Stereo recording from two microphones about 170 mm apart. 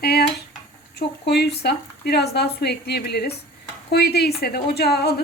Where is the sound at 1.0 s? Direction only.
75° left (ahead or behind).